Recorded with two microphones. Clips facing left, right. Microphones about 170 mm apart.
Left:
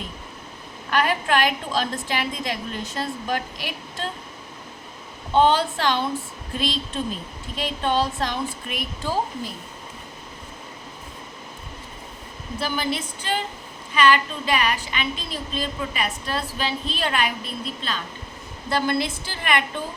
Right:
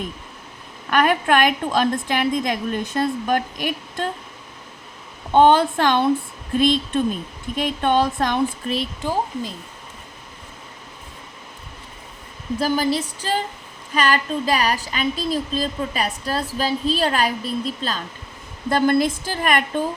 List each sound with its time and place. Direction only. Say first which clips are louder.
0.9 s a woman's voice: right 4 dB; 50° right (ahead or behind)
5.3 s a woman's voice: right 4 dB; 50° right (ahead or behind)
9.0 s a woman's voice: right 1 dB; 20° right (ahead or behind)
12.5 s a woman's voice: right 6 dB; 40° right (ahead or behind)